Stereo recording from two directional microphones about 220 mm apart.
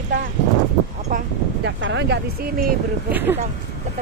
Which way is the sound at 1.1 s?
35° right (ahead or behind).